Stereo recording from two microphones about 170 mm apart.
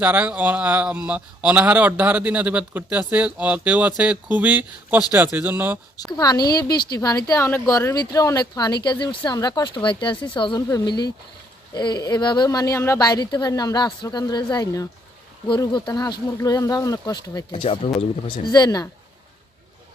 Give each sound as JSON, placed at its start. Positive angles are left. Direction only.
{"t": 0.0, "sound": "speech", "side_deg": -10}
{"t": 6.0, "sound": "speech", "side_deg": 20}
{"t": 18.5, "sound": "speech", "side_deg": 25}